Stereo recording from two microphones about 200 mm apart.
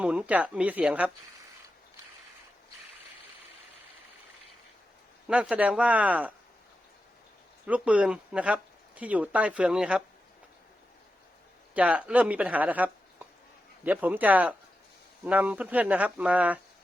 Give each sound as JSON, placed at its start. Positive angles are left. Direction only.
{"t": 0.0, "sound": "speech", "side_deg": -5}
{"t": 5.3, "sound": "speech", "side_deg": -5}
{"t": 7.7, "sound": "speech", "side_deg": -5}
{"t": 11.7, "sound": "speech", "side_deg": -5}